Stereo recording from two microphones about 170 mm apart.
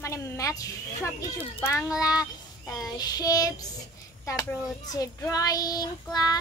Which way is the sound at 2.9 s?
25° left (ahead or behind).